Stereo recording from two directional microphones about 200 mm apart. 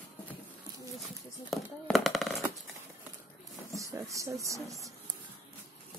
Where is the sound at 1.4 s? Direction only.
Centre (ahead or behind).